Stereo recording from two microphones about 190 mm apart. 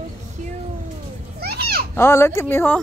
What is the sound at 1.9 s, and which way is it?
Speech, 15° left (ahead or behind).